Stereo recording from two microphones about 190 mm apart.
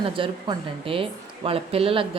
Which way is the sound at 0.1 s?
25° right (ahead or behind).